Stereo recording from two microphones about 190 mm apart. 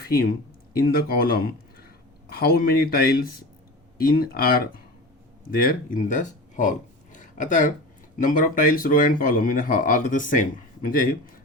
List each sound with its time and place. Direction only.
0.0 s speech: 50° left (ahead or behind)